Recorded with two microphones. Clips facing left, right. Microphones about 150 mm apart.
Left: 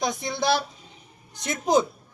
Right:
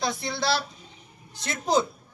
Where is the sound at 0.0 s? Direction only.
15° left (ahead or behind).